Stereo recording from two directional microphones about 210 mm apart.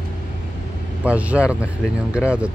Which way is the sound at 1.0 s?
5° right (ahead or behind).